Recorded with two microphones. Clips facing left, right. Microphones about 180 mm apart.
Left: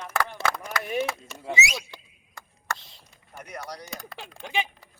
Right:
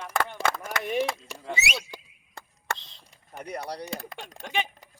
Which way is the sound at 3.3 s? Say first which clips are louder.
Right 4 dB; 20° right (ahead or behind).